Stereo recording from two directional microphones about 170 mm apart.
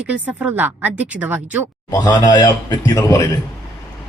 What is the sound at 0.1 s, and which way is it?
A woman's voice, 10° right (ahead or behind).